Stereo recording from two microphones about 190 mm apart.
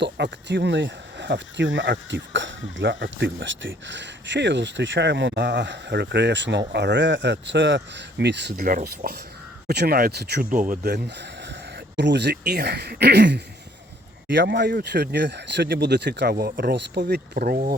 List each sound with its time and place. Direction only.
0.0 s speech: 65° right (ahead or behind)
8.6 s speech: 45° right (ahead or behind)
9.6 s speech: 55° right (ahead or behind)
10.9 s speech: 65° right (ahead or behind)